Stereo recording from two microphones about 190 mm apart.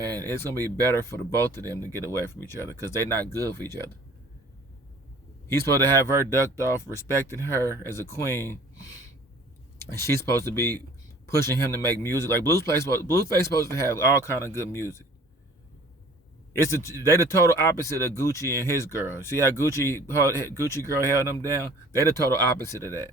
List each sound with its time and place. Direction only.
0.3 s speech: 10° left (ahead or behind)
5.5 s speech: 15° left (ahead or behind)
16.5 s a man's voice: 15° left (ahead or behind)